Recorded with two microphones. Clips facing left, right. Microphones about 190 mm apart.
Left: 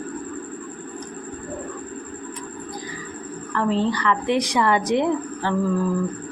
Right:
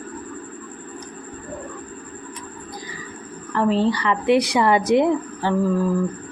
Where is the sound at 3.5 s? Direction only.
15° right (ahead or behind).